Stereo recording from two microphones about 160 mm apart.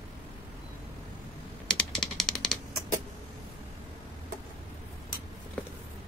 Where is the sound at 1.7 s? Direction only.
5° left (ahead or behind).